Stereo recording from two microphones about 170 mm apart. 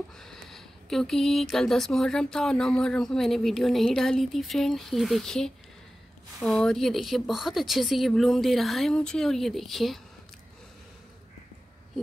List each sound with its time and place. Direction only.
0.2 s speech: centre (ahead or behind)